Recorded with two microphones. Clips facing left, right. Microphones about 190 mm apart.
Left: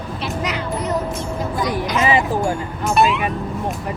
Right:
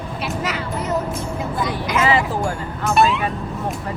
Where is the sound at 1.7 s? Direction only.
15° left (ahead or behind).